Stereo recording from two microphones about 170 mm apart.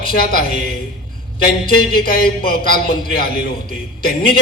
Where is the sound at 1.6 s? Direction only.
60° left (ahead or behind).